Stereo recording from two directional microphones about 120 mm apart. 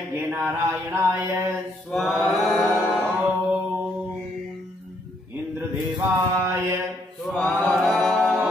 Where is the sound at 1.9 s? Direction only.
5° left (ahead or behind).